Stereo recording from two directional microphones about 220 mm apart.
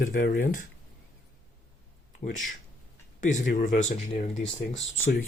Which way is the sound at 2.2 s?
35° left (ahead or behind).